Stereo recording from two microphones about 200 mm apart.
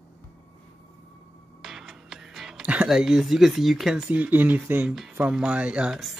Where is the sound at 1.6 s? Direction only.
Centre (ahead or behind).